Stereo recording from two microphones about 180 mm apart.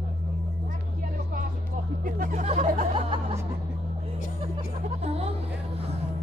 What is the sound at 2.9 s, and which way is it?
Music, 35° right (ahead or behind).